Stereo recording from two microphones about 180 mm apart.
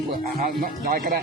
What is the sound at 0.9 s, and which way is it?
Speech, 50° right (ahead or behind).